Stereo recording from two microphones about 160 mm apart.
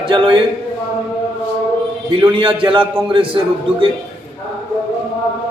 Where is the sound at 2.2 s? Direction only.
30° right (ahead or behind).